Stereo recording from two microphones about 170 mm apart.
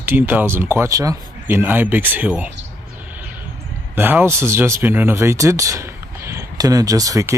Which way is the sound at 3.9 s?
10° right (ahead or behind).